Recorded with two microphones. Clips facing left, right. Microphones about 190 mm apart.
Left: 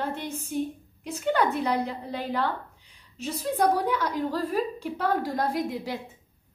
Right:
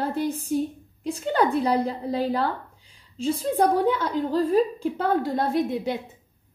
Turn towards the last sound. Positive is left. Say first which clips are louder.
# right 5 dB
turn(degrees=-20)  # may be behind; listen again after turning